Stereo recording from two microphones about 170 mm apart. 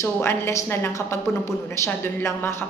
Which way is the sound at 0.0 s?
15° left (ahead or behind).